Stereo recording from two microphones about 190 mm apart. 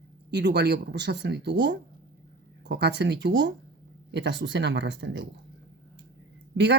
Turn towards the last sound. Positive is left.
turn(degrees=-70)  # may be behind; listen again after turning